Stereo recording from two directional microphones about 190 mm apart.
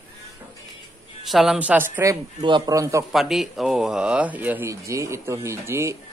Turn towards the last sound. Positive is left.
turn(degrees=-15)  # may be behind; listen again after turning